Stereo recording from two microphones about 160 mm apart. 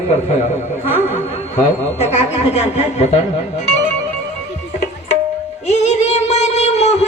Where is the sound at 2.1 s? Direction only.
40° left (ahead or behind).